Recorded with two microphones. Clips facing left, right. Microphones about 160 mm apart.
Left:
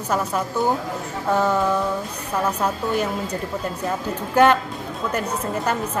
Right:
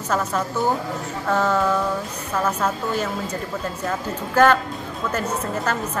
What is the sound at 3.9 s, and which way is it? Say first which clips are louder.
A woman's voice: even; 15° left (ahead or behind).